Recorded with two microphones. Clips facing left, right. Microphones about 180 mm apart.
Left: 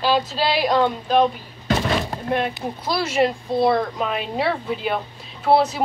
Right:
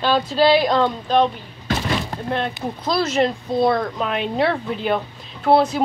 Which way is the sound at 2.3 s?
10° left (ahead or behind).